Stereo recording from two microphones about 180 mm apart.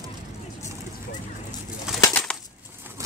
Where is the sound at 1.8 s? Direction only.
Centre (ahead or behind).